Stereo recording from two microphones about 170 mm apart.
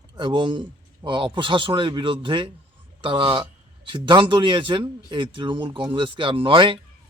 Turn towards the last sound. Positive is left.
turn(degrees=-30)  # may be behind; listen again after turning